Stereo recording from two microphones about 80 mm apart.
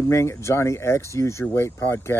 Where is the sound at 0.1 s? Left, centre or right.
Left.